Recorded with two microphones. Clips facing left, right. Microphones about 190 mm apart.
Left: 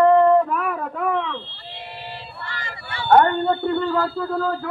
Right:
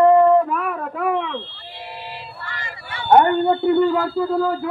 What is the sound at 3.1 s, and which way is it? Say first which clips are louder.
A man's voice: right 2 dB; 15° right (ahead or behind).